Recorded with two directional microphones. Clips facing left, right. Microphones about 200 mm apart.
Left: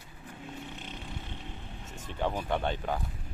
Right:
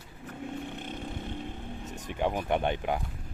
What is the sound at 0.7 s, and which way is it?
Vehicle, 55° right (ahead or behind).